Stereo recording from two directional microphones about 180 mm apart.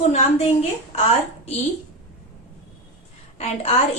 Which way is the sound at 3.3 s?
35° left (ahead or behind).